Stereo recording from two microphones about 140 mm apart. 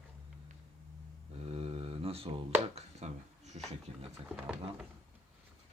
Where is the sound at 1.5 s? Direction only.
45° right (ahead or behind).